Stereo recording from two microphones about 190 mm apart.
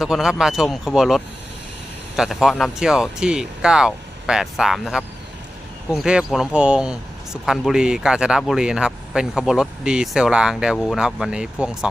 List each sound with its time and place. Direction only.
0.0 s speech: 5° right (ahead or behind)